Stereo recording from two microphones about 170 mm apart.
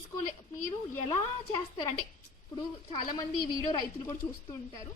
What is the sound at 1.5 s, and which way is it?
Speech, 25° left (ahead or behind).